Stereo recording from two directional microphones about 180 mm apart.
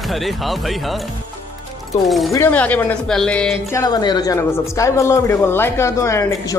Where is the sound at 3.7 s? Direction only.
20° left (ahead or behind).